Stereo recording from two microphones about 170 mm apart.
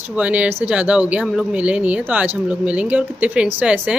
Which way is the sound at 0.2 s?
10° right (ahead or behind).